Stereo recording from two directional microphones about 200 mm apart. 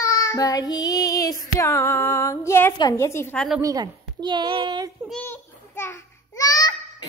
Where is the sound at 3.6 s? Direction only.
20° right (ahead or behind).